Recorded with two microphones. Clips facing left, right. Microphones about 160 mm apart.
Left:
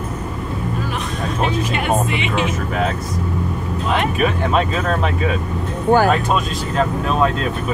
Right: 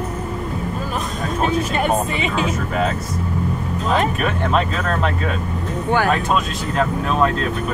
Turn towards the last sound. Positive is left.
turn(degrees=40)  # may be behind; listen again after turning